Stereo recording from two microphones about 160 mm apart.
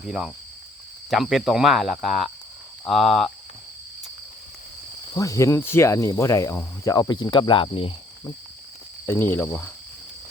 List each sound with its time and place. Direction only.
0.1 s speech: 5° right (ahead or behind)
5.1 s speech: 20° left (ahead or behind)
9.0 s speech: 15° left (ahead or behind)